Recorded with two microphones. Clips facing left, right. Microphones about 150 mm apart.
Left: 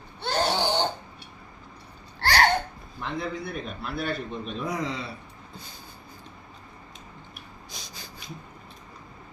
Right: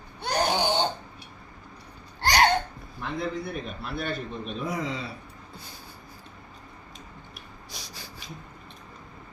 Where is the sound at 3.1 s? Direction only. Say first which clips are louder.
Right 1 dB; centre (ahead or behind).